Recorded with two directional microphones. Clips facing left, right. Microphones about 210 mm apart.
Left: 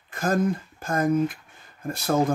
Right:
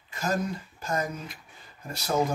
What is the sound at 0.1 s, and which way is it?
Speech, 50° left (ahead or behind).